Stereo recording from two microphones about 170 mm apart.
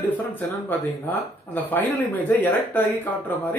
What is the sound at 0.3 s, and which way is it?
Speech, 10° left (ahead or behind).